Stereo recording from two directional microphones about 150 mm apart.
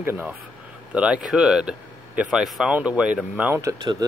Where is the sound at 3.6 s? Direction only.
25° right (ahead or behind).